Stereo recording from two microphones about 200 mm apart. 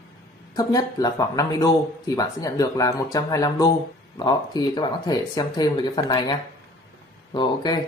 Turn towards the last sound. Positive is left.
turn(degrees=20)  # may be behind; listen again after turning